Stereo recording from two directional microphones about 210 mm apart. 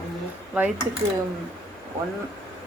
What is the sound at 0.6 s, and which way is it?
Speech, 10° right (ahead or behind).